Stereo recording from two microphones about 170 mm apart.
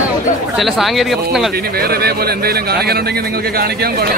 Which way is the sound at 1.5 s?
65° right (ahead or behind).